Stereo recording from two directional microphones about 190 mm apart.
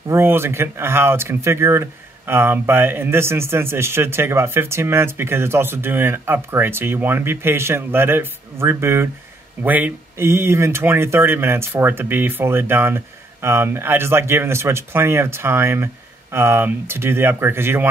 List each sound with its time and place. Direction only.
0.1 s speech: 10° right (ahead or behind)